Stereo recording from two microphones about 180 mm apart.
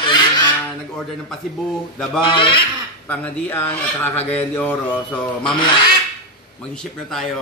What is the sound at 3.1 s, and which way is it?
Speech, 10° left (ahead or behind).